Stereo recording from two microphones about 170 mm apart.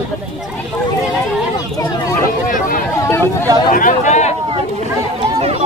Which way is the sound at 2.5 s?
55° left (ahead or behind).